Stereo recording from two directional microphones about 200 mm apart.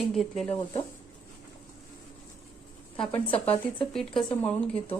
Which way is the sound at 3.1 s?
30° left (ahead or behind).